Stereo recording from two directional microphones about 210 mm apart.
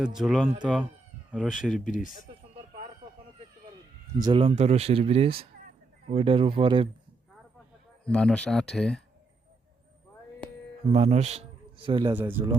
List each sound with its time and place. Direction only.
0.0 s speech: centre (ahead or behind)
1.8 s speech: 40° left (ahead or behind)
4.2 s speech: 25° right (ahead or behind)
8.0 s speech: 5° left (ahead or behind)
10.8 s a man's voice: 30° right (ahead or behind)
12.1 s speech: 10° right (ahead or behind)